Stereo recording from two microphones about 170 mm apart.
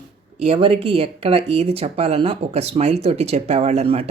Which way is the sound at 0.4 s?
35° right (ahead or behind).